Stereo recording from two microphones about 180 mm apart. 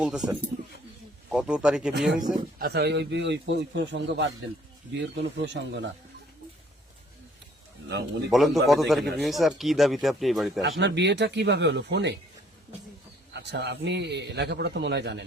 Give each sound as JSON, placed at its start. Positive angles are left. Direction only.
{"t": 0.0, "sound": "speech", "side_deg": -5}
{"t": 1.3, "sound": "speech", "side_deg": -5}
{"t": 2.6, "sound": "a man's voice", "side_deg": -65}
{"t": 8.3, "sound": "speech", "side_deg": 0}
{"t": 10.6, "sound": "a man's voice", "side_deg": -75}
{"t": 13.3, "sound": "a man's voice", "side_deg": -70}